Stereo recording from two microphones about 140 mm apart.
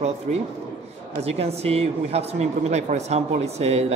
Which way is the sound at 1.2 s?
45° right (ahead or behind).